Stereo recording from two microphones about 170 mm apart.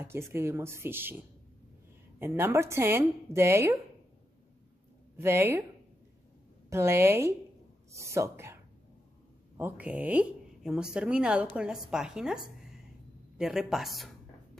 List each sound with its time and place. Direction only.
0.0 s a woman's voice: 15° right (ahead or behind)
5.1 s a woman's voice: 15° right (ahead or behind)
6.7 s a woman's voice: 15° right (ahead or behind)
9.6 s a woman's voice: 10° right (ahead or behind)
13.4 s a sound: 5° right (ahead or behind)